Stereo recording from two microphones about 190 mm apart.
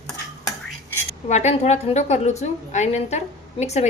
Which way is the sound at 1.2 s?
35° left (ahead or behind).